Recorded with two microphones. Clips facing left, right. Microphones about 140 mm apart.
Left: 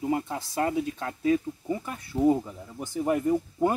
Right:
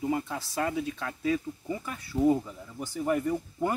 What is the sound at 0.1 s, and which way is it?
Speech, 20° left (ahead or behind).